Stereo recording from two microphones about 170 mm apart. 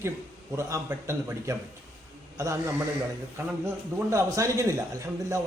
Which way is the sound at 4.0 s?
15° right (ahead or behind).